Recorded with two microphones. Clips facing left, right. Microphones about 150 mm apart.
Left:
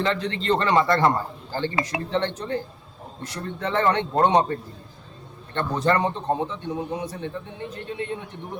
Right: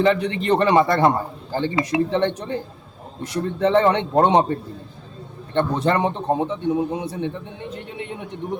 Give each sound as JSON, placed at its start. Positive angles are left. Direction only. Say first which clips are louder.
{"t": 0.0, "sound": "a man's voice", "louder": "right 6 dB", "side_deg": -15}
{"t": 5.5, "sound": "a man's voice", "louder": "right 3 dB", "side_deg": -20}